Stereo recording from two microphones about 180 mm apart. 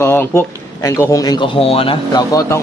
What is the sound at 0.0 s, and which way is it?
Speech, 15° left (ahead or behind).